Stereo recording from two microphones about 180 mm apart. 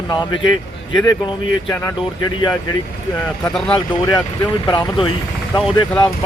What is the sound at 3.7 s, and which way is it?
Speech, 25° left (ahead or behind).